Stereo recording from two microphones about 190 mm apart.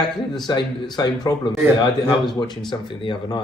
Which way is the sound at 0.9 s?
20° left (ahead or behind).